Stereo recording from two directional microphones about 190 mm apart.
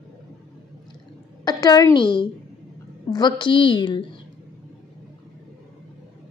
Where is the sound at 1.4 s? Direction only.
20° left (ahead or behind).